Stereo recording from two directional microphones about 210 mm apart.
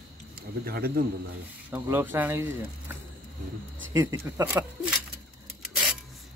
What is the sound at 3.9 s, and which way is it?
Speech, 15° right (ahead or behind).